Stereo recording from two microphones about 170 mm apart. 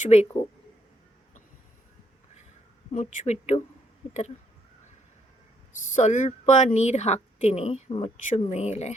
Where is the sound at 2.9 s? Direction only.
45° left (ahead or behind).